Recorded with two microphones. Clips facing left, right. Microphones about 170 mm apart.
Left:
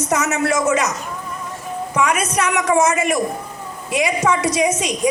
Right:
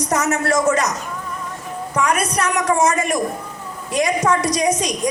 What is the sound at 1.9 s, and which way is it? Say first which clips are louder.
A woman's voice: even; 5° left (ahead or behind).